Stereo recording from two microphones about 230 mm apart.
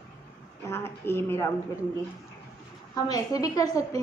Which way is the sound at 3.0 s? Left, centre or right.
Centre.